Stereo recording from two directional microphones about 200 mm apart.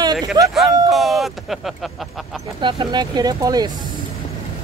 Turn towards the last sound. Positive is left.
turn(degrees=-20)  # may be behind; listen again after turning